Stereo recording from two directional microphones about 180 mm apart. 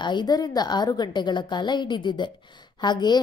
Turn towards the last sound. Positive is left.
turn(degrees=25)  # may be behind; listen again after turning